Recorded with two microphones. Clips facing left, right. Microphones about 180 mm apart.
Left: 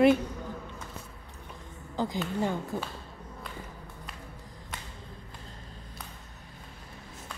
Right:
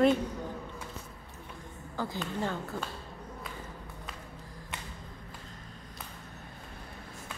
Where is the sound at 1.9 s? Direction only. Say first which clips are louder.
Left 4 dB; 15° left (ahead or behind).